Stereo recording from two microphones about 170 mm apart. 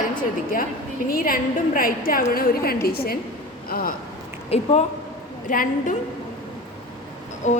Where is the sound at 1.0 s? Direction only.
55° left (ahead or behind).